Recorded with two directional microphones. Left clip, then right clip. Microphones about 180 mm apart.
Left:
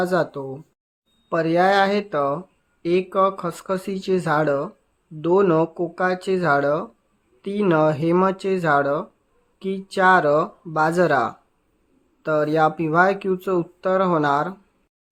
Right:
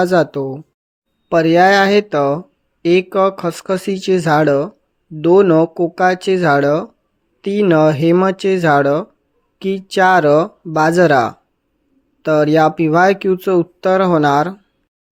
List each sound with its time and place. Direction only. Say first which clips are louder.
0.0 s speech: right 8 dB; 35° right (ahead or behind)